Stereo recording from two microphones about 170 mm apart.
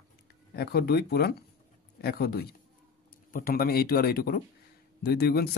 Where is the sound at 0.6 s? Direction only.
70° left (ahead or behind).